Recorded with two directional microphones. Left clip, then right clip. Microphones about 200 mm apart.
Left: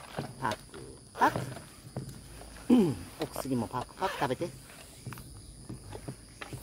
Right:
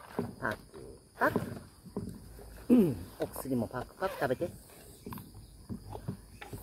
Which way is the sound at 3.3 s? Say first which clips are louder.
Left 4 dB; 30° left (ahead or behind).